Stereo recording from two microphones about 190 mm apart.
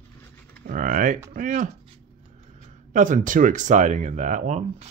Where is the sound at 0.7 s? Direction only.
45° right (ahead or behind).